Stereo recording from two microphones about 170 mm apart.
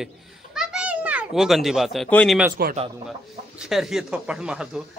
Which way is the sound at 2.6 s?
65° right (ahead or behind).